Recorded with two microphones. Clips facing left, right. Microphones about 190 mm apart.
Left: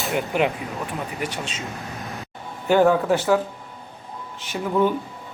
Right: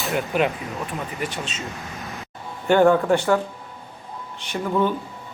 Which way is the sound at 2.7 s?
5° left (ahead or behind).